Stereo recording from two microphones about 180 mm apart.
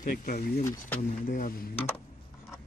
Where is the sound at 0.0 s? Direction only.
50° left (ahead or behind).